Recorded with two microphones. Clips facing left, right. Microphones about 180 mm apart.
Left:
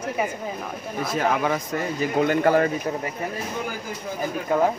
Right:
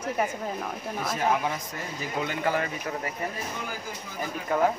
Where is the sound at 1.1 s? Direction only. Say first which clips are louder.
Left 4 dB; 90° left; by 2.7 s 50° left (ahead or behind).